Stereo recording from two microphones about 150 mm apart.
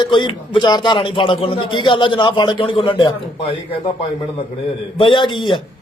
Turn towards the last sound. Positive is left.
turn(degrees=30)  # may be behind; listen again after turning